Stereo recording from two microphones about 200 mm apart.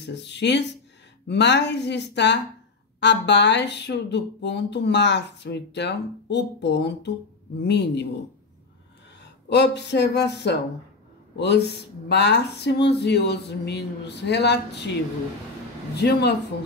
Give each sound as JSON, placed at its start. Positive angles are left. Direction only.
{"t": 0.0, "sound": "speech", "side_deg": 60}
{"t": 9.2, "sound": "speech", "side_deg": 60}
{"t": 16.0, "sound": "speech", "side_deg": 55}